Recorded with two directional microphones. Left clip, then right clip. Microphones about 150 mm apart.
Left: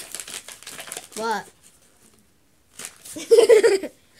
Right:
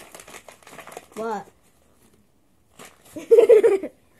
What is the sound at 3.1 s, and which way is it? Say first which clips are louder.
Speech: even; 40° left (ahead or behind).